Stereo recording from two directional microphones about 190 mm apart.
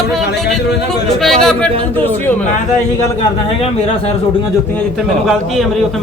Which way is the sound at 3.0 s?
25° left (ahead or behind).